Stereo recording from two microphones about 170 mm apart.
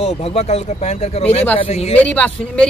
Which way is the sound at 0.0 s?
35° left (ahead or behind).